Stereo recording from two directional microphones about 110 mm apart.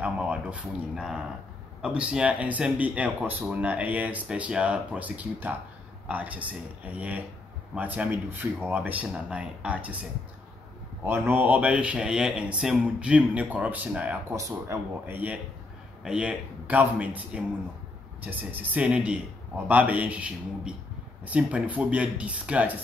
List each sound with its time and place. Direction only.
0.0 s speech: 10° right (ahead or behind)
11.1 s speech: 20° right (ahead or behind)
14.3 s speech: 25° right (ahead or behind)
16.0 s speech: 10° right (ahead or behind)